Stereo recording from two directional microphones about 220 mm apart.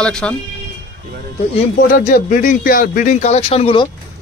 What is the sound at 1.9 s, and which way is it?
Speech, 40° left (ahead or behind).